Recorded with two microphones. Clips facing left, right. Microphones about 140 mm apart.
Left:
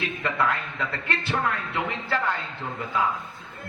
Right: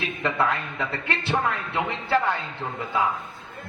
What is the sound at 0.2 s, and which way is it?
A man's voice, 25° right (ahead or behind).